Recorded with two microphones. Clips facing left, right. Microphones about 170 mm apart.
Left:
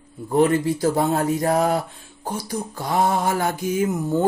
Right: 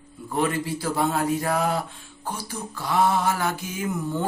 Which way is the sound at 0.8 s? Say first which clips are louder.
Left 4 dB; 35° left (ahead or behind).